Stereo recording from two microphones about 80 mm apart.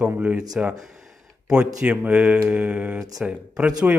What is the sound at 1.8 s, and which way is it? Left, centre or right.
Speech, centre.